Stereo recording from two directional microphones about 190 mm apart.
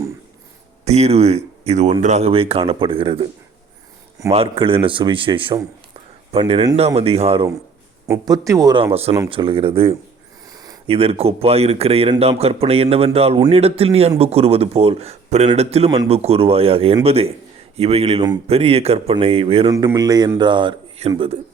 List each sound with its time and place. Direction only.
0.9 s speech: 35° right (ahead or behind)
4.3 s speech: 30° right (ahead or behind)
8.0 s speech: 15° right (ahead or behind)
10.4 s a sound: 20° right (ahead or behind)
10.9 s speech: 30° right (ahead or behind)
19.7 s speech: 20° right (ahead or behind)